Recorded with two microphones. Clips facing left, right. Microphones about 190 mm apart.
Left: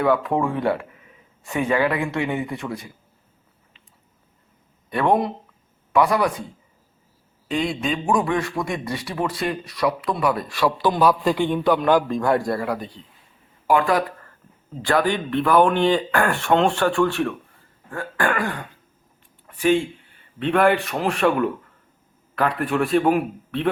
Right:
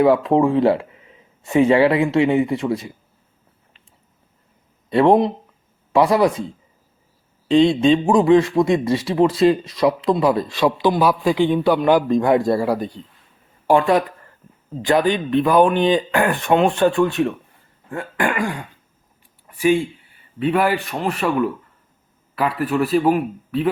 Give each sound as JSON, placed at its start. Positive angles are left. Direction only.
{"t": 0.0, "sound": "a man's voice", "side_deg": -25}
{"t": 4.9, "sound": "a man's voice", "side_deg": -25}
{"t": 7.4, "sound": "a man's voice", "side_deg": -25}
{"t": 14.4, "sound": "a sound", "side_deg": -10}
{"t": 14.8, "sound": "a man's voice", "side_deg": -20}